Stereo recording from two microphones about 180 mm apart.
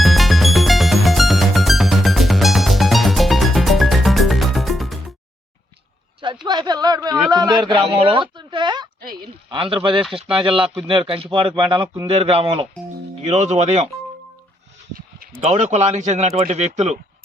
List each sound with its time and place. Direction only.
0.0 s music: centre (ahead or behind)
6.1 s a sound: 25° right (ahead or behind)
9.0 s speech: 55° right (ahead or behind)
9.5 s speech: 30° right (ahead or behind)
14.9 s a sound: 50° right (ahead or behind)
15.5 s speech: 40° right (ahead or behind)